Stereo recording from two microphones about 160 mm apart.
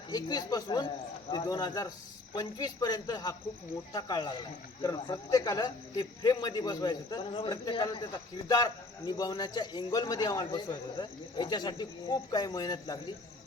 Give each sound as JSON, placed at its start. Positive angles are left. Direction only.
{"t": 0.1, "sound": "a man's voice", "side_deg": 25}